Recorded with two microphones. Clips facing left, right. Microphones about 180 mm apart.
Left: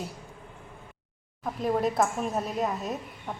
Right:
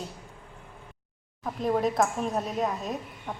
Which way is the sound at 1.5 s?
Centre (ahead or behind).